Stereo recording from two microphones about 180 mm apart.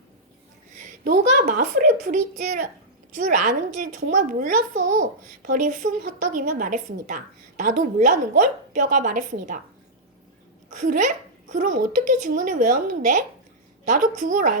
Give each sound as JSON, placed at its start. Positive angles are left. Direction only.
{"t": 0.8, "sound": "a child's voice", "side_deg": -50}
{"t": 10.7, "sound": "a child's voice", "side_deg": -45}